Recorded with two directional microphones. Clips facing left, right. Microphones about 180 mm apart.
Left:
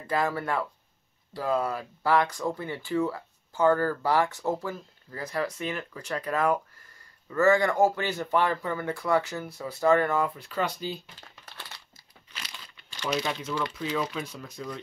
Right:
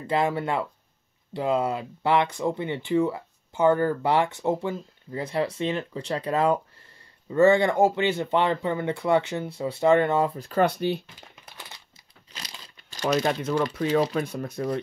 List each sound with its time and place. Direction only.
0.0 s speech: 25° right (ahead or behind)
10.4 s speech: 55° right (ahead or behind)
11.1 s crumpling: 15° right (ahead or behind)
12.3 s crumpling: 40° right (ahead or behind)
14.1 s speech: 55° right (ahead or behind)